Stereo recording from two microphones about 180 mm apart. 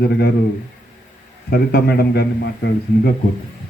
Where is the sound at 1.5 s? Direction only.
60° left (ahead or behind).